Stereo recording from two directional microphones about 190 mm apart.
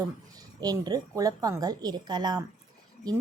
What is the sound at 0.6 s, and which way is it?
Speech, 20° right (ahead or behind).